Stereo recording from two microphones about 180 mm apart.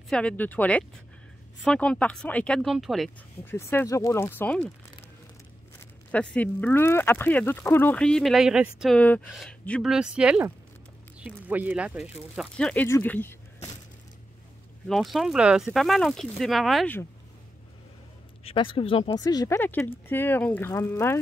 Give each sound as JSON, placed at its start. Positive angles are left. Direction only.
{"t": 0.1, "sound": "speech", "side_deg": 5}
{"t": 3.4, "sound": "speech", "side_deg": 15}
{"t": 6.1, "sound": "speech", "side_deg": 10}
{"t": 12.4, "sound": "speech", "side_deg": 5}
{"t": 14.9, "sound": "speech", "side_deg": 0}
{"t": 18.4, "sound": "speech", "side_deg": 30}